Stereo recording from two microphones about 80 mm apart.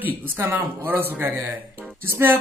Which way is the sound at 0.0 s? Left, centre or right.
Right.